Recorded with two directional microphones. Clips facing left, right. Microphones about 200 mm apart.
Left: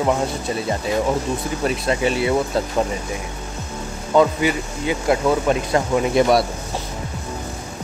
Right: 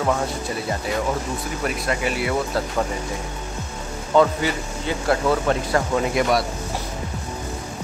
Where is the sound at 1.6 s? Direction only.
25° left (ahead or behind).